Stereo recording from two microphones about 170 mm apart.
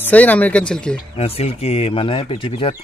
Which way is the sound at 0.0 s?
10° left (ahead or behind).